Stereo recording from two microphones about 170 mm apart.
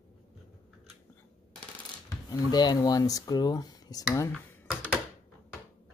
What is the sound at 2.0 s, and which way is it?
Speech, 20° left (ahead or behind).